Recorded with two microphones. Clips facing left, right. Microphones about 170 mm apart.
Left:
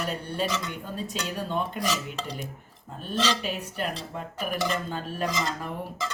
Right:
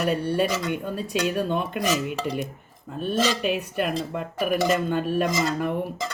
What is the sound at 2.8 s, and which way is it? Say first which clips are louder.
Speech: right 4 dB; 60° right (ahead or behind).